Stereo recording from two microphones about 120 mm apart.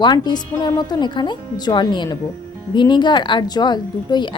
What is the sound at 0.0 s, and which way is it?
A woman's voice, 40° left (ahead or behind).